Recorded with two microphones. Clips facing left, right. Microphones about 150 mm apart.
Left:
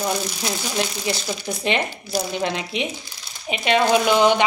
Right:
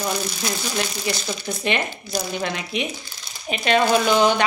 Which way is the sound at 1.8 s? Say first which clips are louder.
Left 2 dB; 5° left (ahead or behind).